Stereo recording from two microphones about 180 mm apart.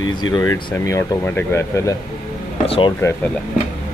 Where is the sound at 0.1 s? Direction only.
25° left (ahead or behind).